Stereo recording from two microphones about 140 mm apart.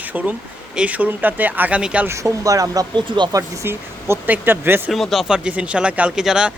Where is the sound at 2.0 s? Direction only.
20° right (ahead or behind).